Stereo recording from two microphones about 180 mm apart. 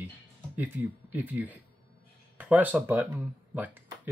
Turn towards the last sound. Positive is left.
turn(degrees=-10)  # may be behind; listen again after turning